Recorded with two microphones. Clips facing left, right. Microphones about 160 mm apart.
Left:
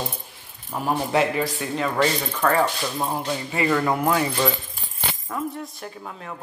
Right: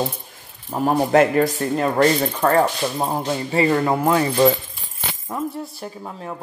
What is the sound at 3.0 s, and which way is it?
Speech, 30° right (ahead or behind).